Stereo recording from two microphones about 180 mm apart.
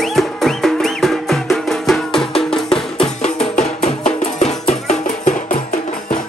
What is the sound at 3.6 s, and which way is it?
Music, 40° left (ahead or behind).